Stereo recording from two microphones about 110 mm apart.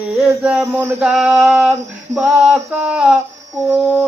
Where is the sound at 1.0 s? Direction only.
5° right (ahead or behind).